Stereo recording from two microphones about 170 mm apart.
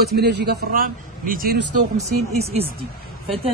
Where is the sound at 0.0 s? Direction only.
70° right (ahead or behind).